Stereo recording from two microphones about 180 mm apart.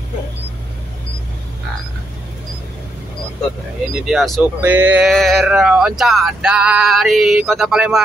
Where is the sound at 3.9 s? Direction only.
Centre (ahead or behind).